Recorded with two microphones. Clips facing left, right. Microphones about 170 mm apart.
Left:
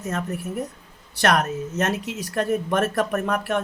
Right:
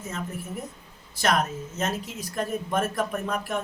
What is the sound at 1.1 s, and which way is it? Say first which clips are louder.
Speech: left 4 dB; 70° left (ahead or behind).